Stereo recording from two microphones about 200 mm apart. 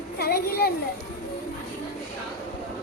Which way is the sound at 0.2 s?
50° left (ahead or behind).